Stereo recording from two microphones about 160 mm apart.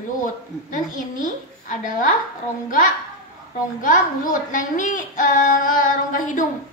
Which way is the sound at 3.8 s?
55° left (ahead or behind).